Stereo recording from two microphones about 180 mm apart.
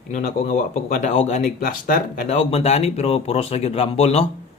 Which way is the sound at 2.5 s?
35° left (ahead or behind).